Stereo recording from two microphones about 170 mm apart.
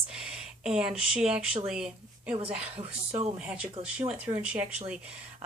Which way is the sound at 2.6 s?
40° right (ahead or behind).